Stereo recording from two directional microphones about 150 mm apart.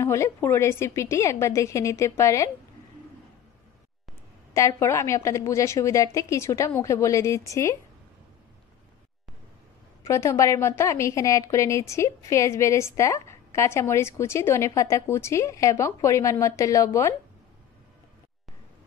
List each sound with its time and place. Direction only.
0.0 s a woman's voice: 20° left (ahead or behind)
4.6 s a woman's voice: 20° left (ahead or behind)
10.0 s a woman's voice: 20° left (ahead or behind)